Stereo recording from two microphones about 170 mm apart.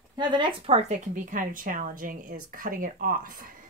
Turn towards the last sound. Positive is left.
turn(degrees=-55)  # may be behind; listen again after turning